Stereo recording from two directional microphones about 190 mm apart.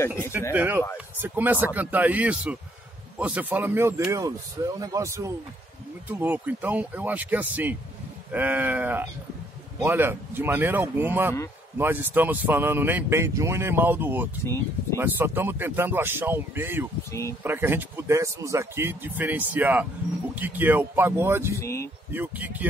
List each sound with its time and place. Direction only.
0.5 s speech: 10° right (ahead or behind)
14.4 s speech: 15° left (ahead or behind)
15.0 s speech: 10° right (ahead or behind)
17.1 s speech: 15° left (ahead or behind)
17.4 s speech: 10° right (ahead or behind)
21.5 s speech: 15° left (ahead or behind)
22.1 s speech: 10° right (ahead or behind)